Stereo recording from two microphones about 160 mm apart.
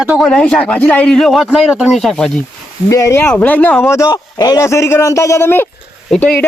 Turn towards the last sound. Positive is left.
turn(degrees=10)  # may be behind; listen again after turning